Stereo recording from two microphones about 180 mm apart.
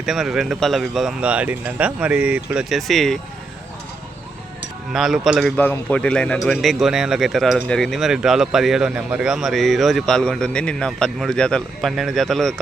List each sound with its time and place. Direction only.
0.0 s a man's voice: centre (ahead or behind)
4.9 s a man's voice: centre (ahead or behind)